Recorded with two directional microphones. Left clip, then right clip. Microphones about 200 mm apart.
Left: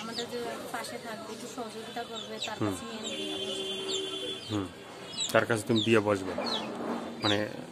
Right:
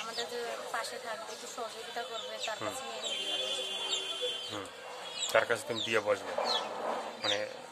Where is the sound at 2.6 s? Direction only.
15° left (ahead or behind).